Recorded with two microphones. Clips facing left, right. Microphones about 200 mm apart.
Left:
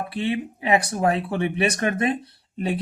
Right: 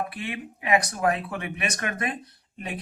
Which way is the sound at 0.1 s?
30° left (ahead or behind).